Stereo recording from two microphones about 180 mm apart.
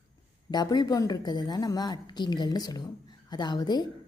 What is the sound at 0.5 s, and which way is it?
A woman's voice, 20° left (ahead or behind).